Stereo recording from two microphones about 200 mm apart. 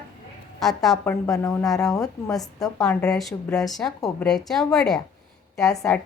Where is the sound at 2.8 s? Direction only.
5° left (ahead or behind).